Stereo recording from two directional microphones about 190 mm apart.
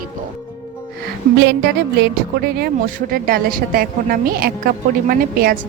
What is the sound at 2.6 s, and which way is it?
A woman's voice, 50° right (ahead or behind).